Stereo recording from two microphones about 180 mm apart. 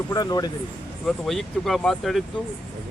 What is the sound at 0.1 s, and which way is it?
Speech, 20° left (ahead or behind).